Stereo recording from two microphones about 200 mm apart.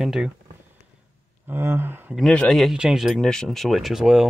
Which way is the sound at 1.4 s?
10° right (ahead or behind).